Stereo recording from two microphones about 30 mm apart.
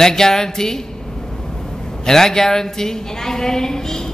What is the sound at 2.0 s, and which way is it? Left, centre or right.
A woman's voice, centre.